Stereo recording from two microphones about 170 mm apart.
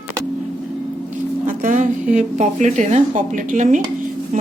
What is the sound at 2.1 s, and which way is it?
Speech, 45° right (ahead or behind).